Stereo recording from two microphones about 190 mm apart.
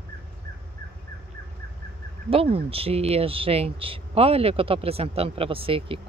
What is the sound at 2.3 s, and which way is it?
Speech, 30° right (ahead or behind).